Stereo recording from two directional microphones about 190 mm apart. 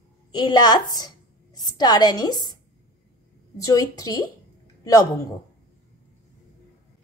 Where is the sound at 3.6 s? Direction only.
20° left (ahead or behind).